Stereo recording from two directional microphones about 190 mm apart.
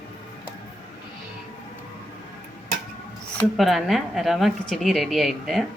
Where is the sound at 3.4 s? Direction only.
Centre (ahead or behind).